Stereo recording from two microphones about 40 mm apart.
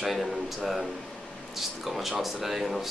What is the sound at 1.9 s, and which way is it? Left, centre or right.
Speech, centre.